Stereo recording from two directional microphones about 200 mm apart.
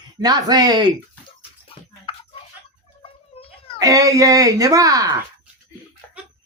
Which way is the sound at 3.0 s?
30° left (ahead or behind).